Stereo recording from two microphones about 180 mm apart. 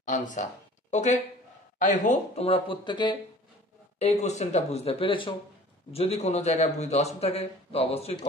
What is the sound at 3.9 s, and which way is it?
A man's voice, 40° left (ahead or behind).